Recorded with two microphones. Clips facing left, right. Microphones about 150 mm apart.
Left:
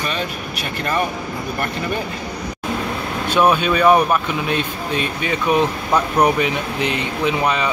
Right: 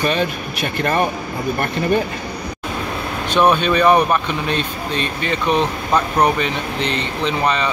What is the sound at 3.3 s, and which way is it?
Speech, 10° left (ahead or behind).